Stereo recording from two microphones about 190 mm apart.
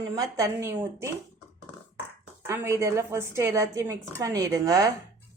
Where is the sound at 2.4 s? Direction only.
15° right (ahead or behind).